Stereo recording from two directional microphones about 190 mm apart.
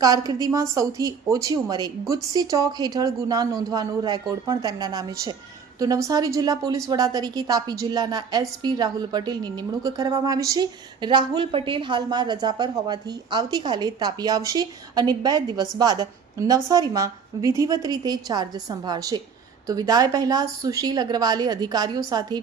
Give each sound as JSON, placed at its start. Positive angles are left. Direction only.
{"t": 0.0, "sound": "a woman's voice", "side_deg": -20}